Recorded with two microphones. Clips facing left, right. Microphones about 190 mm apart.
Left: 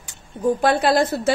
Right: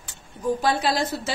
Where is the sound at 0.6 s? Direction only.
55° left (ahead or behind).